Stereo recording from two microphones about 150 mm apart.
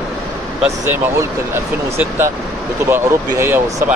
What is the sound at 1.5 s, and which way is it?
Speech, 15° right (ahead or behind).